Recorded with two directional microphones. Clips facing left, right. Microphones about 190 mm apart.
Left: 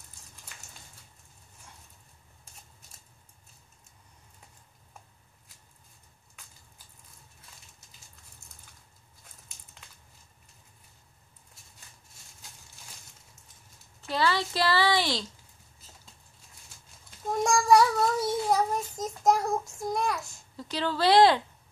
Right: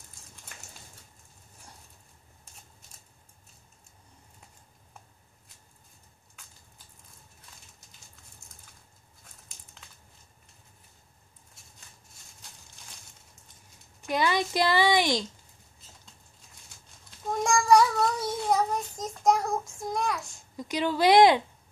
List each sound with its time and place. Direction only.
11.6 s a sound: centre (ahead or behind)
14.0 s a woman's voice: 15° right (ahead or behind)
17.3 s child singing: centre (ahead or behind)
20.5 s a woman's voice: 15° right (ahead or behind)